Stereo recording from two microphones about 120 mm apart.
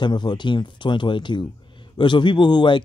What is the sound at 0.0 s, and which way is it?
Speech, 40° left (ahead or behind).